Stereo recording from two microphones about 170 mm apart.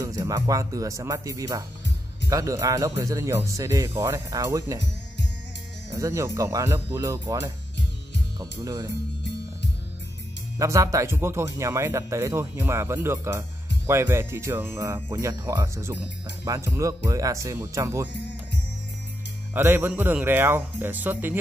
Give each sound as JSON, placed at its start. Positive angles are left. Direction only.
{"t": 0.0, "sound": "speech", "side_deg": -20}
{"t": 5.9, "sound": "speech", "side_deg": -20}
{"t": 10.6, "sound": "speech", "side_deg": -20}
{"t": 19.5, "sound": "speech", "side_deg": -15}